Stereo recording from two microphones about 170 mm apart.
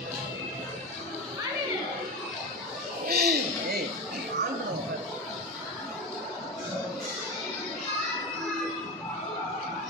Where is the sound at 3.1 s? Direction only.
65° right (ahead or behind).